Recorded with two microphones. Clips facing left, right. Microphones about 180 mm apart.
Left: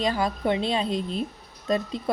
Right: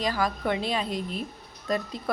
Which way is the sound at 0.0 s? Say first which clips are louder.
Left 2 dB; 25° left (ahead or behind).